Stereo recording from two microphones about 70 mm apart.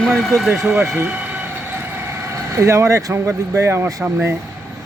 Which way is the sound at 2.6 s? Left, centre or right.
Right.